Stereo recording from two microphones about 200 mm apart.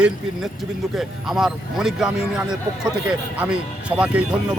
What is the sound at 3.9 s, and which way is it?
Speech, 5° right (ahead or behind).